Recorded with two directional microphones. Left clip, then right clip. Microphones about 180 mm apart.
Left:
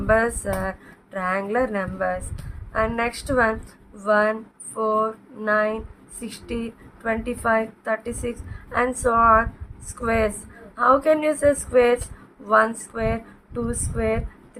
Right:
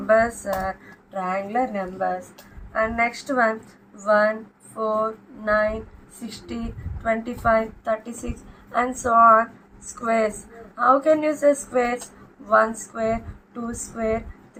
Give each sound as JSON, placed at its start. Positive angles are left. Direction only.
{"t": 0.1, "sound": "speech", "side_deg": 40}
{"t": 7.0, "sound": "speech", "side_deg": 35}